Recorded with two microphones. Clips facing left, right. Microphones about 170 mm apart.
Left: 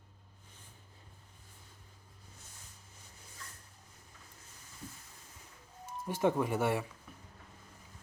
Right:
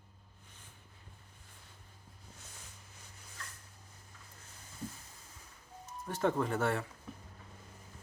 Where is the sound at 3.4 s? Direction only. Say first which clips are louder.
Right 2 dB; 80° right.